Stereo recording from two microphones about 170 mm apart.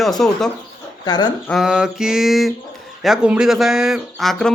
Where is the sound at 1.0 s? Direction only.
25° left (ahead or behind).